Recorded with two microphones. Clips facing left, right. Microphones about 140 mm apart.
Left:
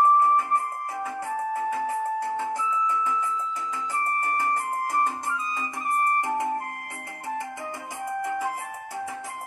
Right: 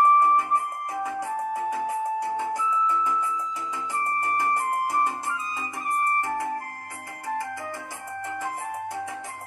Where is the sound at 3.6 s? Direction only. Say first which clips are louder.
Even; 15° right (ahead or behind).